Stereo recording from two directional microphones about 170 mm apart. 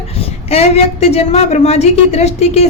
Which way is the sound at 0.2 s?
35° left (ahead or behind).